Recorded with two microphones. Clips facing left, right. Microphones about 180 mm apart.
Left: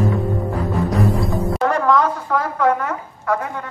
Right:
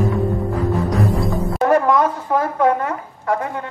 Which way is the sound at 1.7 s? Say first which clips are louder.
Right 3 dB; 25° right (ahead or behind).